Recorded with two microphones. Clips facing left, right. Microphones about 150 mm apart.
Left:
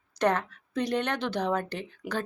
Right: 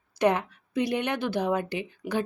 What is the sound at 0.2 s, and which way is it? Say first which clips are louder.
A woman's voice: right 2 dB; 10° right (ahead or behind).